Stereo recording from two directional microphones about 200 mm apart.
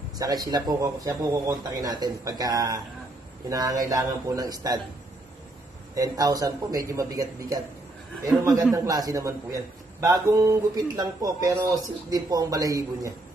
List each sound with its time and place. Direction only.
0.5 s a man's voice: 20° right (ahead or behind)
5.9 s a man's voice: 15° right (ahead or behind)
8.7 s a man's voice: 15° right (ahead or behind)